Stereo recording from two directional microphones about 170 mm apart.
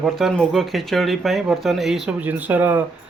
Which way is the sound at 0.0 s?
Centre (ahead or behind).